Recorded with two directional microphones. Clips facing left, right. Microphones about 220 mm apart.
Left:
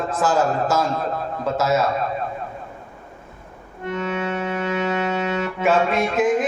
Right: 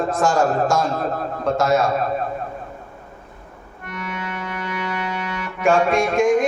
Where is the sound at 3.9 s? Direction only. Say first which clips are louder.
Left 6 dB; 25° left (ahead or behind).